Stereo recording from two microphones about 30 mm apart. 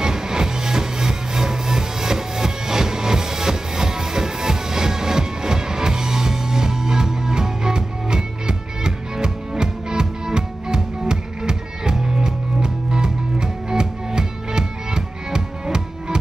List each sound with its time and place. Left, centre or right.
0.0 s music: right